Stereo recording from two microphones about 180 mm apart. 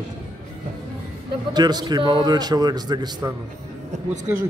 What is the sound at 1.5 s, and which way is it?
Speech, 25° right (ahead or behind).